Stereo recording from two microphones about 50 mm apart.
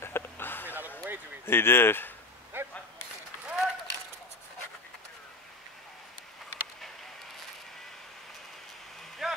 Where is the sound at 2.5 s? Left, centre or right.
Right.